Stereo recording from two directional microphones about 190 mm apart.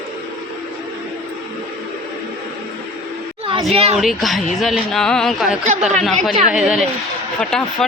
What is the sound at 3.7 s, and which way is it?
Speech, 30° right (ahead or behind).